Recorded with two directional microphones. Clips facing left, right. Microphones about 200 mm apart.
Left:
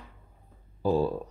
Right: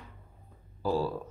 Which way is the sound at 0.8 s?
20° left (ahead or behind).